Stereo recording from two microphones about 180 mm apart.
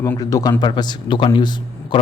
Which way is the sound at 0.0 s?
20° left (ahead or behind).